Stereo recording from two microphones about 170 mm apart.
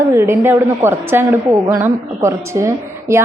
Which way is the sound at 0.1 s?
15° right (ahead or behind).